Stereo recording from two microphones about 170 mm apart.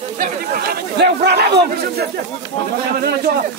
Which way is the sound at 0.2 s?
60° right (ahead or behind).